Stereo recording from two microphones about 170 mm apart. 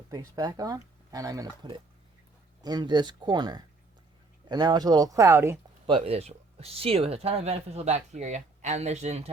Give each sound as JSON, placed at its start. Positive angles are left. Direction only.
{"t": 0.1, "sound": "speech", "side_deg": -20}
{"t": 5.8, "sound": "speech", "side_deg": -35}